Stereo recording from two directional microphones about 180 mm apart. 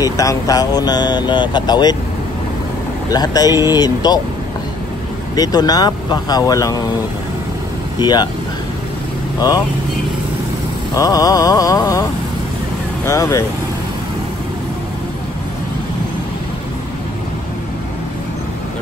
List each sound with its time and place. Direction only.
0.0 s speech: 20° left (ahead or behind)
3.1 s speech: 20° left (ahead or behind)
5.3 s speech: 20° left (ahead or behind)
8.0 s speech: 25° left (ahead or behind)
11.0 s speech: 20° left (ahead or behind)